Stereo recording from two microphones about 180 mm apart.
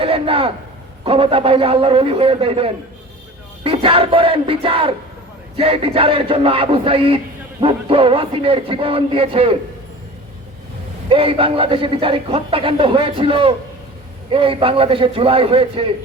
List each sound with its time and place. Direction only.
0.0 s a man's voice: 30° right (ahead or behind)
11.1 s a man's voice: 30° right (ahead or behind)